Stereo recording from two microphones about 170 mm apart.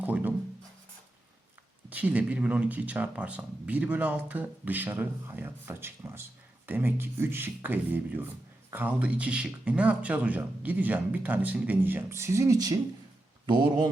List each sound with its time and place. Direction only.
0.0 s music: 10° right (ahead or behind)
1.9 s speech: 10° right (ahead or behind)
13.5 s a sound: 25° right (ahead or behind)